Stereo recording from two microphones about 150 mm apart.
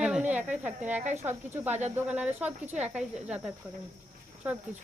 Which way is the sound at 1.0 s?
50° right (ahead or behind).